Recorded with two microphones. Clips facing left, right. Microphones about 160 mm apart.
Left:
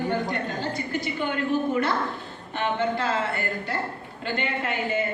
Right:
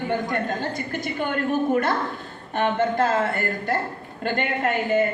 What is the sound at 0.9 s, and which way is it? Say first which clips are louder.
A man's voice: right 1 dB; 50° right (ahead or behind).